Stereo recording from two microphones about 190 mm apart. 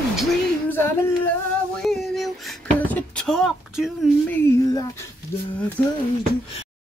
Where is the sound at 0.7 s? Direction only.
10° left (ahead or behind).